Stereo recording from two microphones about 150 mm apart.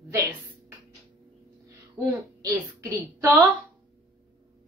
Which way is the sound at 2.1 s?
20° right (ahead or behind).